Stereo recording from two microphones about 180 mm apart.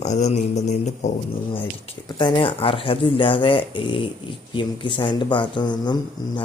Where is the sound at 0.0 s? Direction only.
40° left (ahead or behind).